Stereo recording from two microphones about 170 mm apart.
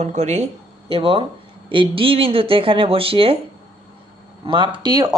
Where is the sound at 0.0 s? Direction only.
40° right (ahead or behind).